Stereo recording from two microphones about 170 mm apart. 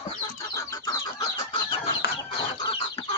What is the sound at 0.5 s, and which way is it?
Chicken, 20° left (ahead or behind).